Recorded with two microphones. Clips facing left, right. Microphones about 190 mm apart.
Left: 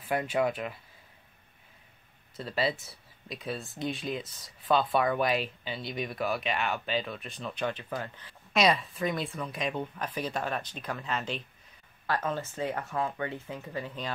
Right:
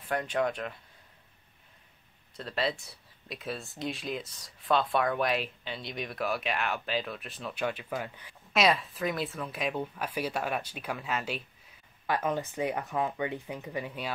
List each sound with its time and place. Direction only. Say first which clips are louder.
0.1 s speech: left 2 dB; 10° left (ahead or behind)
2.3 s speech: left 1 dB; centre (ahead or behind)
8.5 s speech: left 1 dB; centre (ahead or behind)